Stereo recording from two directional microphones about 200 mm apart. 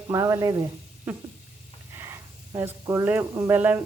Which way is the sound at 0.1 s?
15° right (ahead or behind).